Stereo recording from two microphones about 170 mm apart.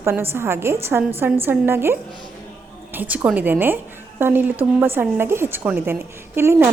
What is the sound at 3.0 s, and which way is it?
A woman's voice, 10° right (ahead or behind).